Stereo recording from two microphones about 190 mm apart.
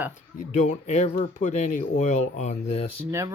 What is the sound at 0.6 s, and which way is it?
Speech, 40° left (ahead or behind).